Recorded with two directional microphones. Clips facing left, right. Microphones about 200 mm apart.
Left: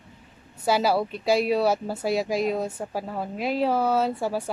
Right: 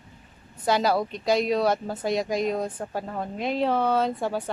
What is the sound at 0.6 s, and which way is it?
A woman's voice, 5° left (ahead or behind).